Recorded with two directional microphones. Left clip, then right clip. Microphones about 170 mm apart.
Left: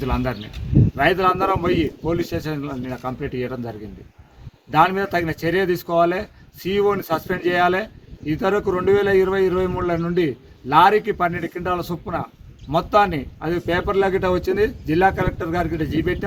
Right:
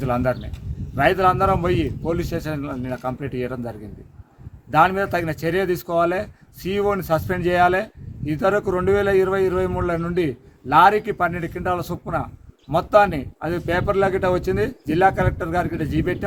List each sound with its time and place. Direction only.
0.0 s a man's voice: 30° right (ahead or behind)